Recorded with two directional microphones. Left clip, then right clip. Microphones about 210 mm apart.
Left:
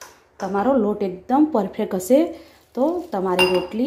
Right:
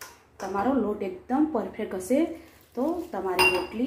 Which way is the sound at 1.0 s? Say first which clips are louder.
Left 8 dB; 55° left (ahead or behind).